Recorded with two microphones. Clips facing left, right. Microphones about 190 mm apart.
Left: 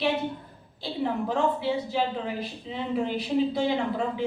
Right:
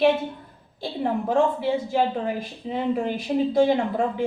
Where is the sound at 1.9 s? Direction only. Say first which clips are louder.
Right 5 dB; 50° right (ahead or behind).